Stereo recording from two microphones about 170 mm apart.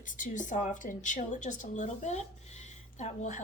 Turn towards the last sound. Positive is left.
turn(degrees=45)  # may be behind; listen again after turning